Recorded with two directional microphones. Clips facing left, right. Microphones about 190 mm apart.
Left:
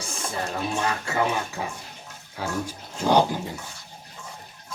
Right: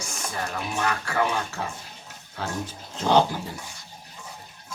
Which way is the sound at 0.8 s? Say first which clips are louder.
Right 1 dB; 25° left (ahead or behind).